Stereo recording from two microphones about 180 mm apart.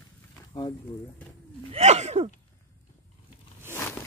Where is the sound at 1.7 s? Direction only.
40° right (ahead or behind).